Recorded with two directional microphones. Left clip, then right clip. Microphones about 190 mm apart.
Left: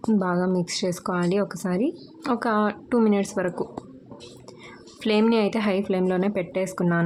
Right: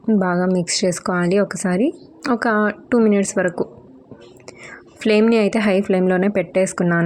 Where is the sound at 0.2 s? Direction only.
20° right (ahead or behind).